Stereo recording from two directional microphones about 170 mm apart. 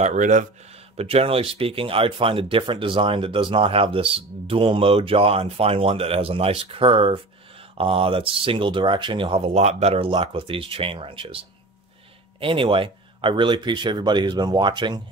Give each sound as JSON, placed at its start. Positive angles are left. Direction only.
{"t": 0.0, "sound": "speech", "side_deg": -45}
{"t": 0.9, "sound": "speech", "side_deg": -35}